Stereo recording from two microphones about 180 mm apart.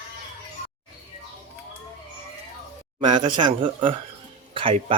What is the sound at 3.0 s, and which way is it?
Speech, 25° right (ahead or behind).